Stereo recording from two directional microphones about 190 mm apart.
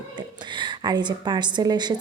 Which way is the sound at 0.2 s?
25° right (ahead or behind).